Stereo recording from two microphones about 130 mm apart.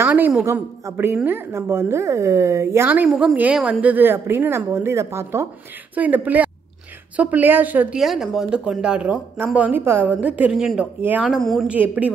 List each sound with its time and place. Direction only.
0.0 s a sound: 15° right (ahead or behind)
0.5 s a woman's voice: 20° right (ahead or behind)
8.0 s speech: centre (ahead or behind)
11.2 s speech: centre (ahead or behind)
11.7 s speech: 10° right (ahead or behind)